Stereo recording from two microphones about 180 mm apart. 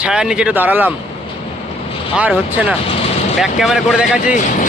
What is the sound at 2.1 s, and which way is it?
Speech, 5° right (ahead or behind).